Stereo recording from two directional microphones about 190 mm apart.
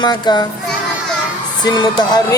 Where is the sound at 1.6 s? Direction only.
20° left (ahead or behind).